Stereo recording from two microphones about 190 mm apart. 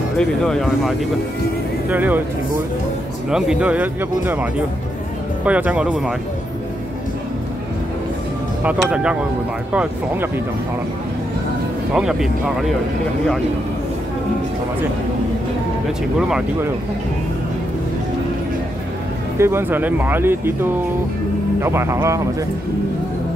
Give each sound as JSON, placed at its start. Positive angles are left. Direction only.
{"t": 0.2, "sound": "speech", "side_deg": 0}
{"t": 1.9, "sound": "speech", "side_deg": -10}
{"t": 3.3, "sound": "speech", "side_deg": -5}
{"t": 8.6, "sound": "speech", "side_deg": -5}
{"t": 11.9, "sound": "speech", "side_deg": -5}
{"t": 16.2, "sound": "speech", "side_deg": -5}
{"t": 19.3, "sound": "speech", "side_deg": -15}